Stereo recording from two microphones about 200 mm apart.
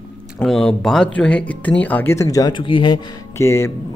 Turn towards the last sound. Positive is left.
turn(degrees=15)  # may be behind; listen again after turning